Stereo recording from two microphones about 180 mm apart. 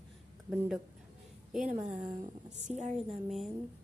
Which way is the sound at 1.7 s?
45° right (ahead or behind).